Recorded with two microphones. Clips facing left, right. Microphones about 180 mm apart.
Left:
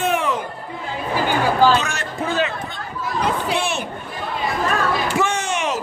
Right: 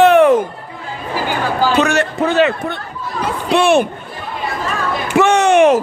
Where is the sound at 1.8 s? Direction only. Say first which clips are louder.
Right 9 dB; 70° right (ahead or behind).